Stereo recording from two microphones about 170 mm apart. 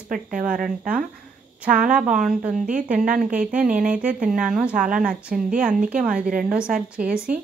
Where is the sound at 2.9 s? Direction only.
50° right (ahead or behind).